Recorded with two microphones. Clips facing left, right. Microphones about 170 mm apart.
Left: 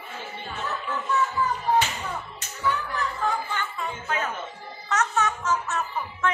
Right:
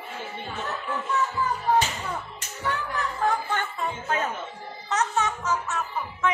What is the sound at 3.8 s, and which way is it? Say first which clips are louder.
Music: right 2 dB; 35° right (ahead or behind).